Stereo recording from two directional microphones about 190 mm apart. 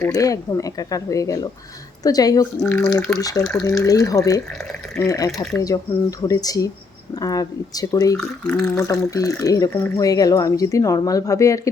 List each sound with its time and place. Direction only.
0.0 s speech: 15° left (ahead or behind)
2.6 s speech: 5° left (ahead or behind)
3.2 s speech: 20° left (ahead or behind)
8.2 s speech: 5° left (ahead or behind)
8.7 s speech: 15° left (ahead or behind)